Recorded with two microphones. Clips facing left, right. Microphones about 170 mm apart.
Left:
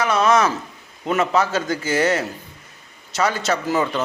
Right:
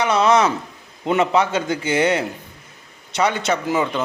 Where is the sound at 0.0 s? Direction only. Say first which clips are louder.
Right 1 dB; 20° right (ahead or behind).